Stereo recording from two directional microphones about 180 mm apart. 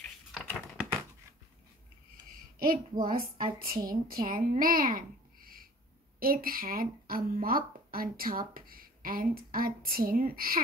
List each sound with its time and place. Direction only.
0.3 s typing: 5° left (ahead or behind)
3.0 s a child's voice: 50° right (ahead or behind)